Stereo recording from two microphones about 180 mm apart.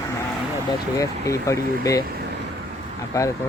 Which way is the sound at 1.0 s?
15° left (ahead or behind).